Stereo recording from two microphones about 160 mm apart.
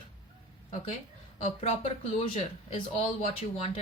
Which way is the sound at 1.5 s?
45° left (ahead or behind).